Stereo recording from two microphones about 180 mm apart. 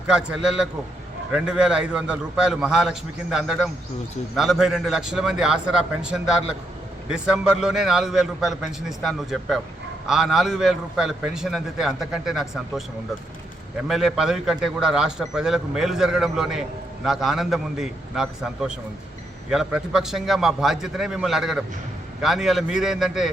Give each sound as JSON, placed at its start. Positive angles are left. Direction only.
{"t": 0.1, "sound": "a man's voice", "side_deg": -5}
{"t": 13.8, "sound": "a man's voice", "side_deg": 0}